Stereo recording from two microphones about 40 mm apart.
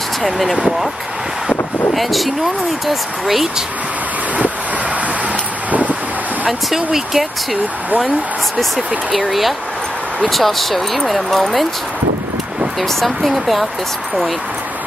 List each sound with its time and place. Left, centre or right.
0.2 s speech: centre
2.0 s speech: centre
5.7 s wind: right
6.4 s speech: centre
8.7 s speech: centre
12.8 s speech: centre